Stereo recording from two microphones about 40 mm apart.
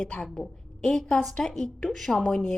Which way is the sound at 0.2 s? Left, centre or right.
Centre.